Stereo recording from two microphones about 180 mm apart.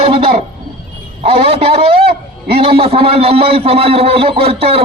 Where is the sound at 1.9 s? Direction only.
60° right (ahead or behind).